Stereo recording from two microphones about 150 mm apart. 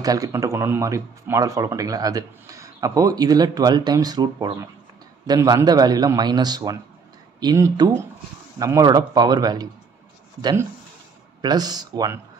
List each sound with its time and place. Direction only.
0.0 s speech: 25° right (ahead or behind)